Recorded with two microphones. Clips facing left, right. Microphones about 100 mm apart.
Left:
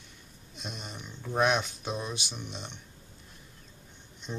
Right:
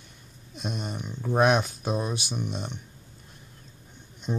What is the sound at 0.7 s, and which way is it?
Speech, 45° right (ahead or behind).